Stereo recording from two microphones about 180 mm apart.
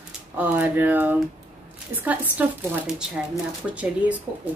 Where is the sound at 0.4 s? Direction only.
10° right (ahead or behind).